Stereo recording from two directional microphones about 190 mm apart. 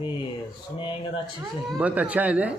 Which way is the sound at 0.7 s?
25° left (ahead or behind).